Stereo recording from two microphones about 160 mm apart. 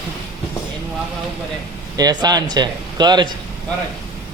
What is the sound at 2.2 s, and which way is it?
Speech, 25° right (ahead or behind).